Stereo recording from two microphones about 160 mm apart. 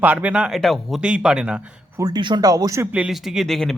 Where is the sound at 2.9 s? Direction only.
5° right (ahead or behind).